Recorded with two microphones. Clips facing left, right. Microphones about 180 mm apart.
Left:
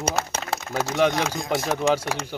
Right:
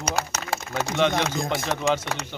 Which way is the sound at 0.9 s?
5° left (ahead or behind).